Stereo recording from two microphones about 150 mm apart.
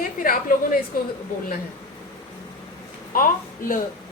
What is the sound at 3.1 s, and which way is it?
Speech, 65° left (ahead or behind).